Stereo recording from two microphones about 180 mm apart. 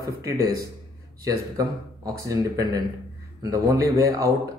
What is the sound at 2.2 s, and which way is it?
Speech, 20° right (ahead or behind).